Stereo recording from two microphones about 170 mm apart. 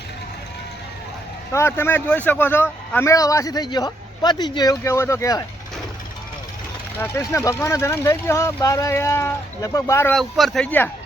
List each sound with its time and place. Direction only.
1.5 s a man's voice: 15° left (ahead or behind)
7.0 s speech: 15° left (ahead or behind)
10.2 s speech: centre (ahead or behind)